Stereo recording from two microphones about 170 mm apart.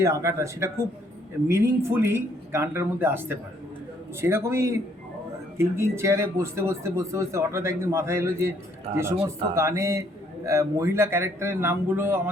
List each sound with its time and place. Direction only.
0.0 s speech: 20° right (ahead or behind)
8.9 s speech: 40° right (ahead or behind)
9.6 s speech: 20° right (ahead or behind)